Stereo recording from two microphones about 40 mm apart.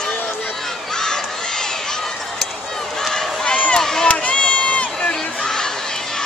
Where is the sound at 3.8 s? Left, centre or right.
Centre.